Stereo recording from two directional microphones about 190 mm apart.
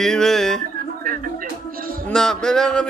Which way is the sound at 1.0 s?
45° right (ahead or behind).